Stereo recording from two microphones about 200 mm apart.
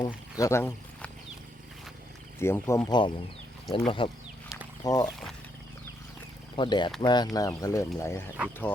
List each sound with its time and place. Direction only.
0.0 s speech: 15° left (ahead or behind)
2.4 s speech: 15° left (ahead or behind)
4.5 s chicken: 15° left (ahead or behind)
6.6 s speech: 20° left (ahead or behind)